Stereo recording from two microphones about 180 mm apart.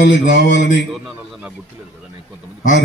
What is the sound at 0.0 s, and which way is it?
Mantra, 70° left (ahead or behind).